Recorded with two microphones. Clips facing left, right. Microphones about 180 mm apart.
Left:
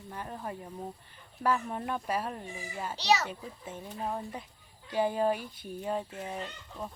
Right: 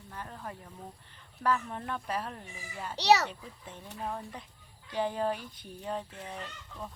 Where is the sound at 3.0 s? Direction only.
65° right (ahead or behind).